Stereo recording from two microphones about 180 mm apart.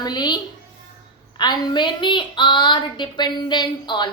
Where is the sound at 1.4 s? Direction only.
25° left (ahead or behind).